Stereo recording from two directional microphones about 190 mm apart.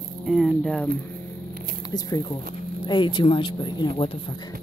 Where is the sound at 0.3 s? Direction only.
Centre (ahead or behind).